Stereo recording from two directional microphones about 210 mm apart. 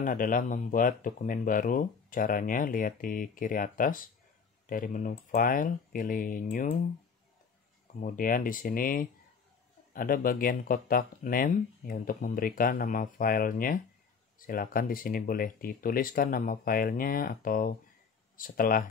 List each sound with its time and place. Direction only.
0.0 s speech: 40° left (ahead or behind)
8.0 s speech: 40° left (ahead or behind)